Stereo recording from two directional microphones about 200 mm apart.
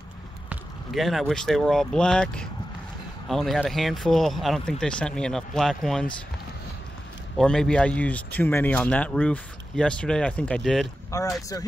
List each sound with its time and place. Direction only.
0.5 s speech: centre (ahead or behind)
7.3 s speech: 5° left (ahead or behind)
11.1 s speech: 15° left (ahead or behind)